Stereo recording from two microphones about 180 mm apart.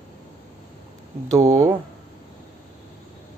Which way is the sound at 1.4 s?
15° right (ahead or behind).